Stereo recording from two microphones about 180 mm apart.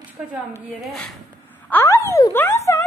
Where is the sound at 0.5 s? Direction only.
5° left (ahead or behind).